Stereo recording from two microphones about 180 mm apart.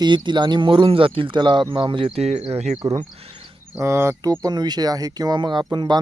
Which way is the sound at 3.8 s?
15° right (ahead or behind).